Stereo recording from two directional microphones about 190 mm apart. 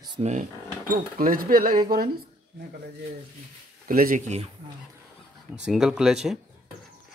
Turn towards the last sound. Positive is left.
turn(degrees=0)  # may be behind; listen again after turning